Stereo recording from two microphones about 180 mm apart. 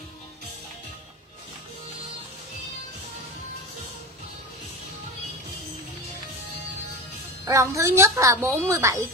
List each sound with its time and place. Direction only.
7.4 s a woman's voice: 15° right (ahead or behind)